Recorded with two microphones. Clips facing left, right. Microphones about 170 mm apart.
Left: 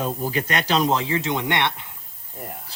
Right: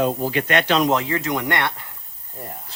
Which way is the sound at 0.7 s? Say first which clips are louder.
Right 1 dB; 30° left (ahead or behind).